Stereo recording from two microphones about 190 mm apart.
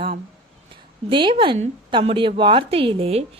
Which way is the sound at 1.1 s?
25° right (ahead or behind).